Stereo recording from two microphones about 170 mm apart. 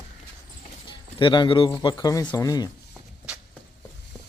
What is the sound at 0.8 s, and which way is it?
Speech, 30° left (ahead or behind).